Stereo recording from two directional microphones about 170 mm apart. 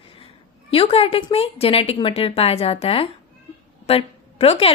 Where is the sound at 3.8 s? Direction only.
35° left (ahead or behind).